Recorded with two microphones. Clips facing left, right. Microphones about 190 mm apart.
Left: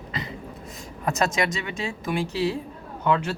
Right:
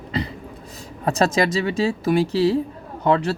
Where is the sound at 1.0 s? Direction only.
35° right (ahead or behind).